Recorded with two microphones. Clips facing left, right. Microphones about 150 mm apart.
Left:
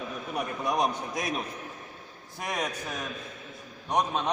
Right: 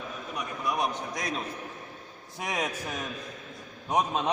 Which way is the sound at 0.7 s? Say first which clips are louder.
Left 2 dB; 20° left (ahead or behind).